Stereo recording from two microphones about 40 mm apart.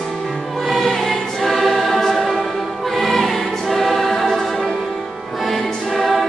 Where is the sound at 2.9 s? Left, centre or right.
Centre.